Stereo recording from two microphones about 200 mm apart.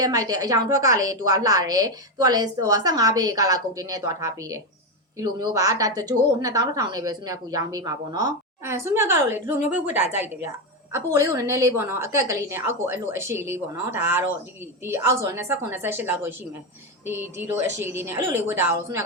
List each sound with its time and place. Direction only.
0.0 s a woman's voice: 20° right (ahead or behind)